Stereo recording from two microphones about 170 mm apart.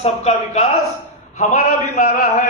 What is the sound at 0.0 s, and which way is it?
Speech, 40° left (ahead or behind).